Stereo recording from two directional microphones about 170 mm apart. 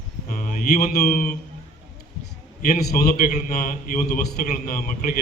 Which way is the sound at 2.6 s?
60° left (ahead or behind).